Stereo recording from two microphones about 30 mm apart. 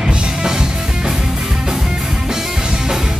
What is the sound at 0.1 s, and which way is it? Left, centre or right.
Music, right.